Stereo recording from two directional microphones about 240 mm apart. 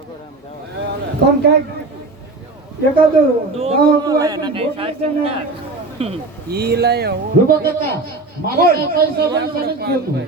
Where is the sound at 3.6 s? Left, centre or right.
Right.